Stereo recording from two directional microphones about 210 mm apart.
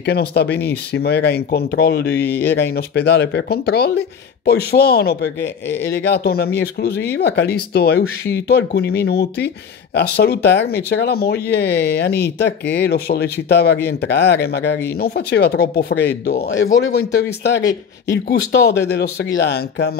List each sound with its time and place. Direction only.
0.0 s speech: 50° left (ahead or behind)
2.2 s speech: 10° left (ahead or behind)
2.5 s speech: 55° left (ahead or behind)
5.4 s speech: 10° left (ahead or behind)
5.9 s speech: 55° left (ahead or behind)
17.1 s speech: 55° left (ahead or behind)